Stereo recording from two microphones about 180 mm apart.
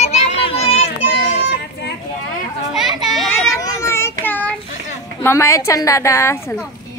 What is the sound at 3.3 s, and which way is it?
Children playing, 15° left (ahead or behind).